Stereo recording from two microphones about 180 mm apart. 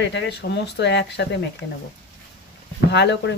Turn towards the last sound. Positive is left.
turn(degrees=75)  # may be behind; listen again after turning